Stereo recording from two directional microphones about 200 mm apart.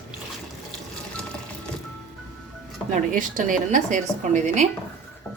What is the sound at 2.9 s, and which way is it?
Speech, 40° right (ahead or behind).